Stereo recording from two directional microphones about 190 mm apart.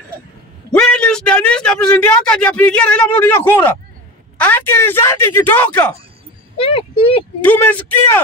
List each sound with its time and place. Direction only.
0.7 s a man's voice: 5° left (ahead or behind)
6.6 s speech: 30° left (ahead or behind)
7.4 s speech: 10° left (ahead or behind)